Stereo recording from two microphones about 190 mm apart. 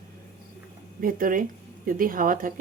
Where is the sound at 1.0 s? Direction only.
45° right (ahead or behind).